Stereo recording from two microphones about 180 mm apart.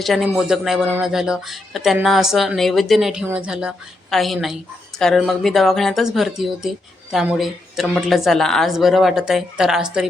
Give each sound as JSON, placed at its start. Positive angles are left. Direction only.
{"t": 0.0, "sound": "speech", "side_deg": 0}